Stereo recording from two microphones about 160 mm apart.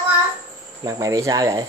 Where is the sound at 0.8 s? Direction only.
20° right (ahead or behind).